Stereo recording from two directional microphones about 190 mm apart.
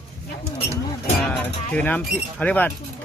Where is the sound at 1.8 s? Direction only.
10° left (ahead or behind).